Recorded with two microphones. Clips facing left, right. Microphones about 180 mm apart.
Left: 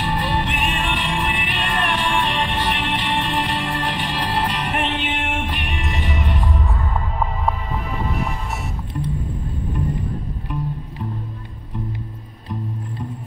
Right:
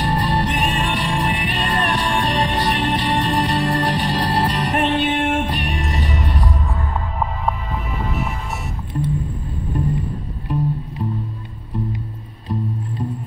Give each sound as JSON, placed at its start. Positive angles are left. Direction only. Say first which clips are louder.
{"t": 0.0, "sound": "music", "louder": "right 2 dB", "side_deg": -40}
{"t": 10.5, "sound": "music", "louder": "right 6 dB", "side_deg": -35}